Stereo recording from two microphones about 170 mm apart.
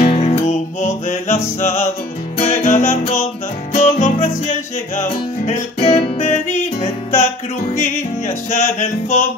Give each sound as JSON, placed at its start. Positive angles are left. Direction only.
{"t": 0.0, "sound": "music", "side_deg": 40}